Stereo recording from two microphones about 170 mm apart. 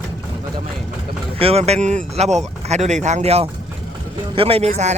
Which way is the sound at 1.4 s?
35° right (ahead or behind).